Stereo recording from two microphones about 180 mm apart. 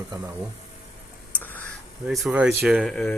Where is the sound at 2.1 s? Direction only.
Centre (ahead or behind).